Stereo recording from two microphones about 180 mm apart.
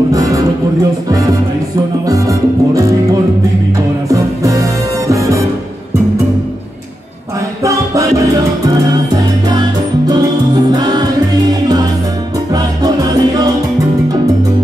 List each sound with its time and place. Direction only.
0.1 s speech: 20° right (ahead or behind)
2.0 s music: 20° right (ahead or behind)
7.6 s music: 15° right (ahead or behind)
10.7 s music: 20° right (ahead or behind)
12.5 s music: 20° right (ahead or behind)